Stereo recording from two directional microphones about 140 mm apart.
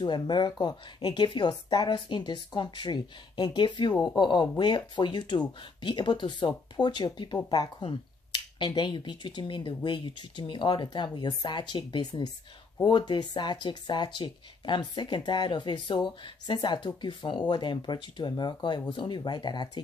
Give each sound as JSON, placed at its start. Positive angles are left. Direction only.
{"t": 0.0, "sound": "speech", "side_deg": 30}